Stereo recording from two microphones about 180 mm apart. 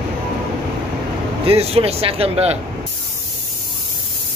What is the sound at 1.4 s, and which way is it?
Speech, 35° right (ahead or behind).